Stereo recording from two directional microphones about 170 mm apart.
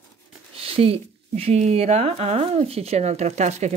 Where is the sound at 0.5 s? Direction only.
35° right (ahead or behind).